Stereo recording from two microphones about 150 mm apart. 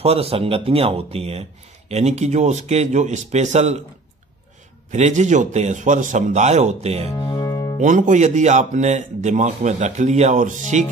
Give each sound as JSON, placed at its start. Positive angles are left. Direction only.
{"t": 0.0, "sound": "speech", "side_deg": -40}
{"t": 4.9, "sound": "speech", "side_deg": -50}
{"t": 7.2, "sound": "music", "side_deg": 30}
{"t": 7.8, "sound": "speech", "side_deg": -60}